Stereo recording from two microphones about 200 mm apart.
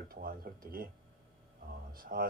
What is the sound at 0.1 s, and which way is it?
Speech, 45° right (ahead or behind).